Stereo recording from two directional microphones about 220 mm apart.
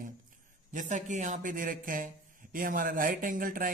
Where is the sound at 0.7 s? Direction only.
35° right (ahead or behind).